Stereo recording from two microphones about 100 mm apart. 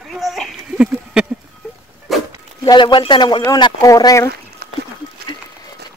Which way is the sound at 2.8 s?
55° left (ahead or behind).